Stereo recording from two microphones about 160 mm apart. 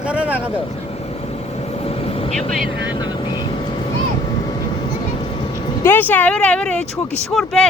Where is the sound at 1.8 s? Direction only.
40° left (ahead or behind).